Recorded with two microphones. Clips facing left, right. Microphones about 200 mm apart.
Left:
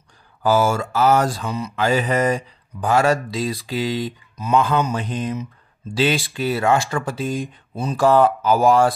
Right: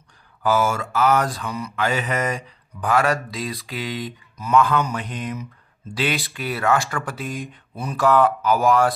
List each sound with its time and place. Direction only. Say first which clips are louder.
0.4 s mantra: left 3 dB; 30° left (ahead or behind)